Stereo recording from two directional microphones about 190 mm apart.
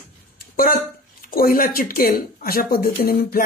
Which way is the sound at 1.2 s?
50° left (ahead or behind).